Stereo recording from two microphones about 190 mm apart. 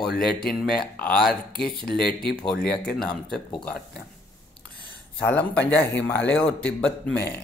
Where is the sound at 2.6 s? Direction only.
5° left (ahead or behind).